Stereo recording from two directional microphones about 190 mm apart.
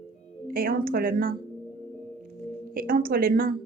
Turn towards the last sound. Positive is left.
turn(degrees=-50)  # may be behind; listen again after turning